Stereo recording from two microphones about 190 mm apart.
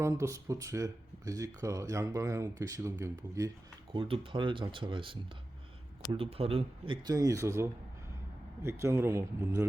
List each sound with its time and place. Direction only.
0.0 s speech: 15° right (ahead or behind)
3.9 s speech: 25° right (ahead or behind)